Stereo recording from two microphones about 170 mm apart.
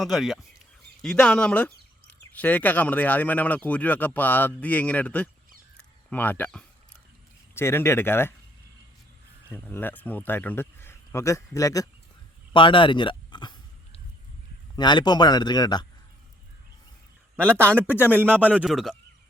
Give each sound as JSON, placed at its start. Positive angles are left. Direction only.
{"t": 0.0, "sound": "speech", "side_deg": 0}
{"t": 9.5, "sound": "speech", "side_deg": 10}
{"t": 12.5, "sound": "a sound", "side_deg": 30}
{"t": 14.8, "sound": "speech", "side_deg": 25}
{"t": 17.9, "sound": "speech", "side_deg": 10}
{"t": 18.2, "sound": "a man's voice", "side_deg": -10}